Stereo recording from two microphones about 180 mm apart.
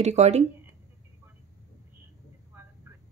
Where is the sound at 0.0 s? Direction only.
40° right (ahead or behind).